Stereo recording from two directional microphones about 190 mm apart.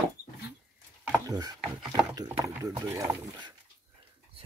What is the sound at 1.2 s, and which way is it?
Speech, 20° right (ahead or behind).